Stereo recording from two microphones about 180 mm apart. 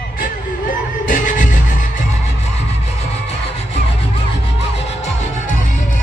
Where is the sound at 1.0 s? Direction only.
45° left (ahead or behind).